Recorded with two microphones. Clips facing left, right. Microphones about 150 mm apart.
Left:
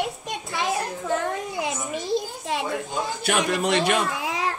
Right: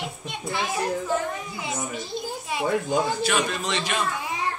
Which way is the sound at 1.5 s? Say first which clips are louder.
Left 3 dB; 85° left.